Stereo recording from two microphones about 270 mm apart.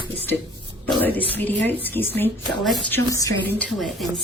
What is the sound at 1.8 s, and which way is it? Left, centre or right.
A woman's voice, centre.